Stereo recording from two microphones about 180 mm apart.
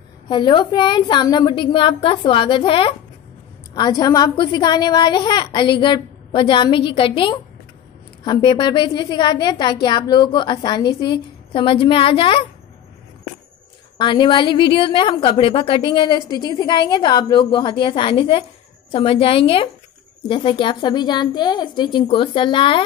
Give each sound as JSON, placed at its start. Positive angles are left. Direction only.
{"t": 0.3, "sound": "a woman's voice", "side_deg": 25}
{"t": 13.9, "sound": "a woman's voice", "side_deg": 25}